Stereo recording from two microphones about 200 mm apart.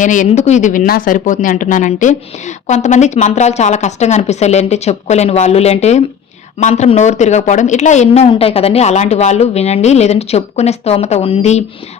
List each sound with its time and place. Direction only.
0.0 s a woman's voice: 40° left (ahead or behind)